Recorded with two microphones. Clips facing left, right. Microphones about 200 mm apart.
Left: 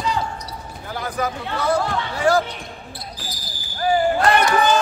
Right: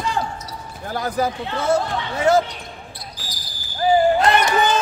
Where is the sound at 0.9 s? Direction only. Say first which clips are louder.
Right 3 dB; 40° right (ahead or behind).